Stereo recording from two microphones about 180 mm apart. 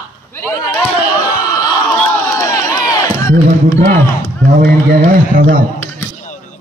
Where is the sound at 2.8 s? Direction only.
20° left (ahead or behind).